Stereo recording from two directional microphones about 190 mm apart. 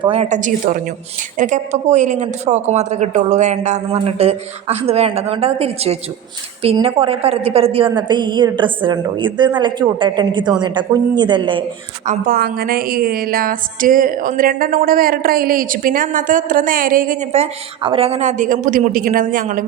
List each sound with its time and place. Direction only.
0.0 s a woman's voice: 35° right (ahead or behind)
12.0 s a woman's voice: 50° right (ahead or behind)